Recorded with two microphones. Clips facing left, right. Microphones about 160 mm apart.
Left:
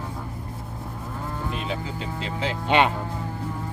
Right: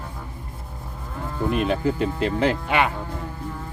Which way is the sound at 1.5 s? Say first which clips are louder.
Right 12 dB; 60° right (ahead or behind).